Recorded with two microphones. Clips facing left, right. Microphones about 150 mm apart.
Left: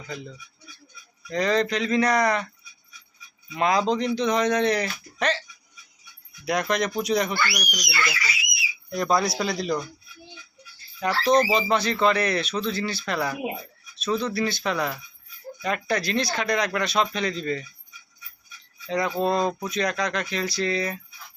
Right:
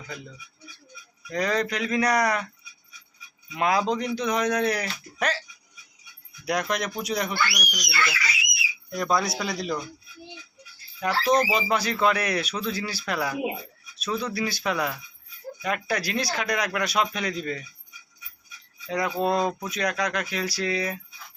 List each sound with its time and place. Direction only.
1.3 s speech: 10° right (ahead or behind)
3.5 s speech: 5° right (ahead or behind)
6.7 s speech: 10° right (ahead or behind)
7.7 s speech: 15° left (ahead or behind)
8.9 s speech: centre (ahead or behind)
11.0 s speech: 5° right (ahead or behind)
18.9 s speech: 5° right (ahead or behind)